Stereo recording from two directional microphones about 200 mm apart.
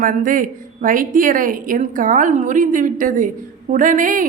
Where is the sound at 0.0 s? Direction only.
40° right (ahead or behind).